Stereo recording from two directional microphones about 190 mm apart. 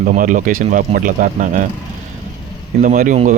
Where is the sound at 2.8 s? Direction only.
40° right (ahead or behind).